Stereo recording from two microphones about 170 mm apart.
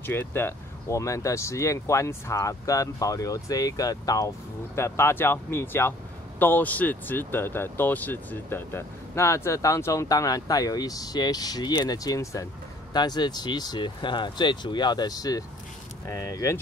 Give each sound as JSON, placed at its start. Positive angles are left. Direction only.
{"t": 0.0, "sound": "speech", "side_deg": 15}